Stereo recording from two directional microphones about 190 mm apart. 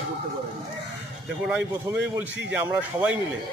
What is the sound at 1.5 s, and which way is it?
A man's voice, 10° right (ahead or behind).